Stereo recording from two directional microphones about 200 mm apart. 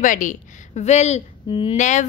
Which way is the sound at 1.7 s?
35° left (ahead or behind).